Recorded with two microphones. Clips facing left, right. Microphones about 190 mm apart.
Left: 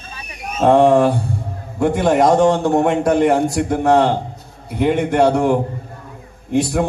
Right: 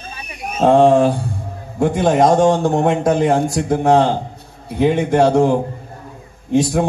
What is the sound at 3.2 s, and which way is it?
Speech, 65° left (ahead or behind).